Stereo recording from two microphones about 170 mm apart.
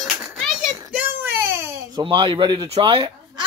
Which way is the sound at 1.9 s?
30° right (ahead or behind).